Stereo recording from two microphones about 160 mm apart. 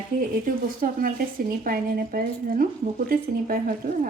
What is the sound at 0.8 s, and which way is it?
Speech, 60° right (ahead or behind).